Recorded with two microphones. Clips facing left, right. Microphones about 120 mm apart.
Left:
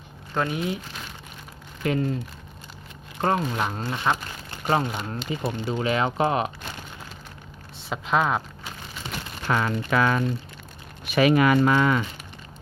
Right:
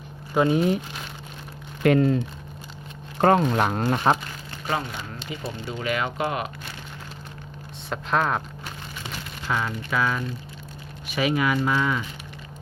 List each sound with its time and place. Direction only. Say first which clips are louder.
0.4 s speech: right 10 dB; 30° right (ahead or behind)
1.8 s speech: right 6 dB; 70° right (ahead or behind)
3.2 s speech: right 5 dB; 75° right (ahead or behind); by 4.2 s 45° right (ahead or behind)
5.3 s speech: left 5 dB; 30° left (ahead or behind)
7.9 s speech: left 1 dB; 5° left (ahead or behind)
9.5 s speech: left 3 dB; 60° left (ahead or behind)